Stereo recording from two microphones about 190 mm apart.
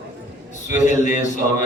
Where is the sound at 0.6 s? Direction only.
40° left (ahead or behind).